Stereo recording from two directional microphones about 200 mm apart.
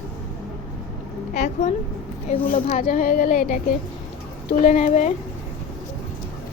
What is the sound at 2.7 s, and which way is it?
Speech, 45° left (ahead or behind).